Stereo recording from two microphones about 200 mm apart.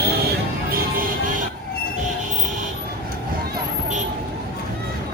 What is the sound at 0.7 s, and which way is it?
Music, 45° right (ahead or behind).